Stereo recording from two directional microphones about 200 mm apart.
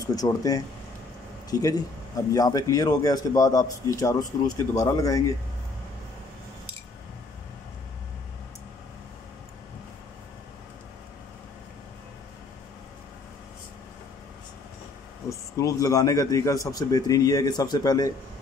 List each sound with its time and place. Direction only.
0.0 s speech: 20° left (ahead or behind)
15.2 s speech: 15° left (ahead or behind)